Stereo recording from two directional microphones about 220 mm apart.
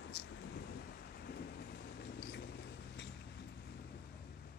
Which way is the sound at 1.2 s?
50° left (ahead or behind).